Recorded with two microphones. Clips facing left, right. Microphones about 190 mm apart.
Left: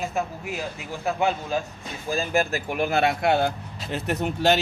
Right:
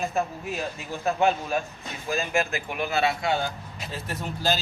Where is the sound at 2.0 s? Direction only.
35° left (ahead or behind).